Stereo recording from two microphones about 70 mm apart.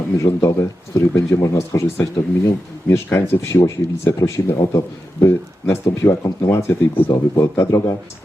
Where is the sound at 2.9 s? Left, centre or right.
Left.